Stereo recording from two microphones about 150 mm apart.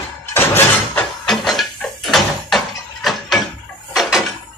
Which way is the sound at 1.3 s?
Centre (ahead or behind).